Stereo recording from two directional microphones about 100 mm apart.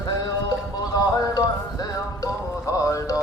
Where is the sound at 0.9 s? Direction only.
40° left (ahead or behind).